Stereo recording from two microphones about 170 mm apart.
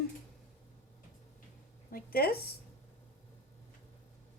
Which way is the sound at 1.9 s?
60° left (ahead or behind).